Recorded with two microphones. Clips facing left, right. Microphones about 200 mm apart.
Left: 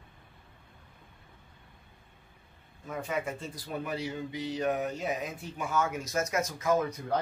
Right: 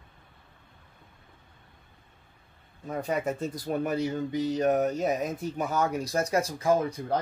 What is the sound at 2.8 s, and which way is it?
Speech, 35° right (ahead or behind).